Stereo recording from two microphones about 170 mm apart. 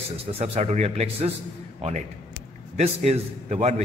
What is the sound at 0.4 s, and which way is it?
A man's voice, 40° right (ahead or behind).